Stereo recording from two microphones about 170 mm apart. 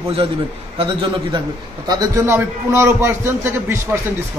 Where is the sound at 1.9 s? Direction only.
20° right (ahead or behind).